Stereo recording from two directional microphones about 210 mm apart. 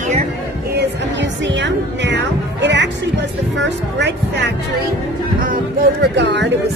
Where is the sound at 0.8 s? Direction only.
55° right (ahead or behind).